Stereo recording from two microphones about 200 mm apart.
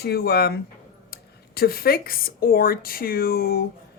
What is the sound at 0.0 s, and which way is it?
Speech, 50° left (ahead or behind).